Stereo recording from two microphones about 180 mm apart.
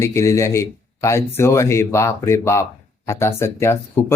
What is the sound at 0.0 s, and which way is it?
Speech, 15° left (ahead or behind).